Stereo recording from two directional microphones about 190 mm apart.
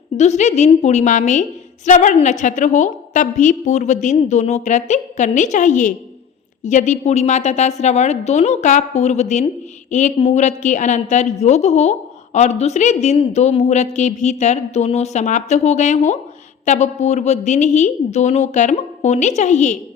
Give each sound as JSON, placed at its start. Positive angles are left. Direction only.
{"t": 0.2, "sound": "a woman's voice", "side_deg": 35}